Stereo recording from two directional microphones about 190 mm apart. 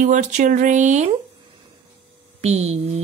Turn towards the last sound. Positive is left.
turn(degrees=-35)  # may be behind; listen again after turning